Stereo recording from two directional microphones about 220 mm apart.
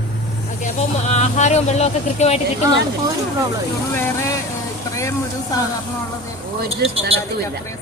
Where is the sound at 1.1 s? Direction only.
30° left (ahead or behind).